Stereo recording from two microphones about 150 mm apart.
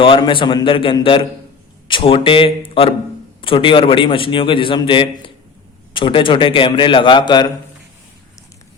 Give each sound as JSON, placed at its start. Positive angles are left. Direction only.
{"t": 0.0, "sound": "a man's voice", "side_deg": 35}